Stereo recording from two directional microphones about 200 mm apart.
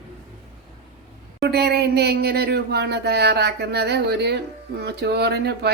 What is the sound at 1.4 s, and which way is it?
Speech, 55° right (ahead or behind).